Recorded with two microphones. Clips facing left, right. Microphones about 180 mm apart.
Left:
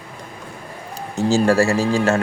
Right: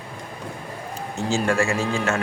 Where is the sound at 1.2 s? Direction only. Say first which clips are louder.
Left 6 dB; 35° left (ahead or behind).